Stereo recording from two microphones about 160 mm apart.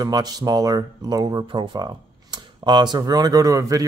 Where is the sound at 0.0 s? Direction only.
25° right (ahead or behind).